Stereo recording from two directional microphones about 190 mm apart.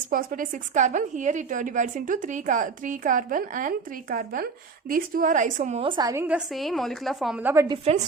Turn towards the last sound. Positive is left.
turn(degrees=-30)  # may be behind; listen again after turning